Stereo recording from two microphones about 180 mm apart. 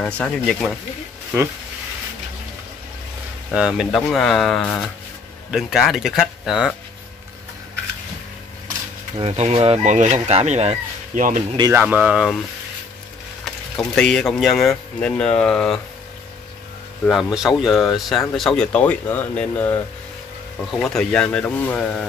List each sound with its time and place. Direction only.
0.0 s speech: 5° left (ahead or behind)
3.5 s speech: 5° right (ahead or behind)
9.2 s speech: 35° right (ahead or behind)
11.7 s speech: 10° right (ahead or behind)
13.7 s speech: 5° left (ahead or behind)
17.0 s speech: centre (ahead or behind)
20.8 s speech: 5° left (ahead or behind)